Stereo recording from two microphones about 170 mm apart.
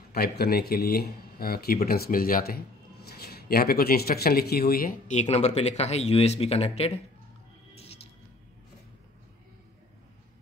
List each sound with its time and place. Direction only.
0.1 s speech: 65° left (ahead or behind)
5.1 s speech: 40° left (ahead or behind)